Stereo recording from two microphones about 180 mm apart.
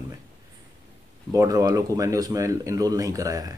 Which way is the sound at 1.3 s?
20° right (ahead or behind).